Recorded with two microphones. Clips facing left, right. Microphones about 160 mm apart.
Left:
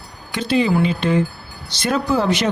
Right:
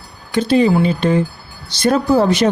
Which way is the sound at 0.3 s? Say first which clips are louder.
Right 4 dB; 40° right (ahead or behind).